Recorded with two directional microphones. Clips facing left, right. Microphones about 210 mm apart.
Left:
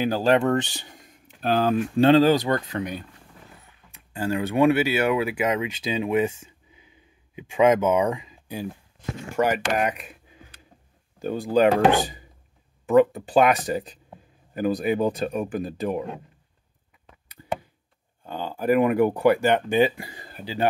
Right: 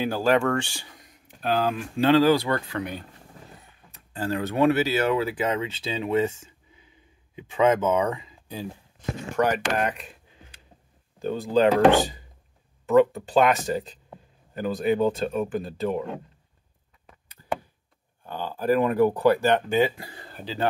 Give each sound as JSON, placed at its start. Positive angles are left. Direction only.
{"t": 0.0, "sound": "speech", "side_deg": 20}
{"t": 1.4, "sound": "speech", "side_deg": 45}
{"t": 2.0, "sound": "speech", "side_deg": 25}
{"t": 11.1, "sound": "speech", "side_deg": 10}
{"t": 18.2, "sound": "speech", "side_deg": 15}